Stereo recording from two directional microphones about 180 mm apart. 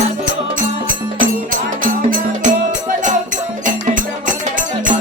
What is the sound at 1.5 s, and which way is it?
Music, 50° right (ahead or behind).